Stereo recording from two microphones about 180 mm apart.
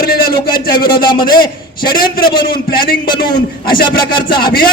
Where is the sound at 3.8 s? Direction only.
25° left (ahead or behind).